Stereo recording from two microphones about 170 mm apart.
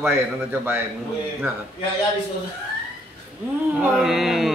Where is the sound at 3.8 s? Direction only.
Centre (ahead or behind).